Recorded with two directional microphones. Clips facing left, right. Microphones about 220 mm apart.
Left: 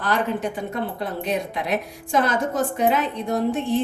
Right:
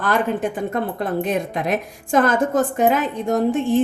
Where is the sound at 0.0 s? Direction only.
50° right (ahead or behind).